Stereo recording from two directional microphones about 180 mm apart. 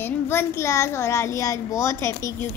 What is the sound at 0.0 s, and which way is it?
Speech, 15° left (ahead or behind).